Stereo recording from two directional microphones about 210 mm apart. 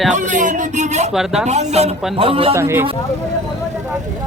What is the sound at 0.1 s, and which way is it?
Speech, 35° right (ahead or behind).